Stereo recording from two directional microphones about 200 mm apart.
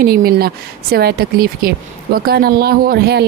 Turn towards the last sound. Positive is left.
turn(degrees=-55)  # may be behind; listen again after turning